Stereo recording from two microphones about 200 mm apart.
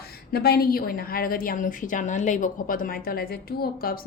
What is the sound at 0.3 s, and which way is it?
A woman's voice, 50° left (ahead or behind).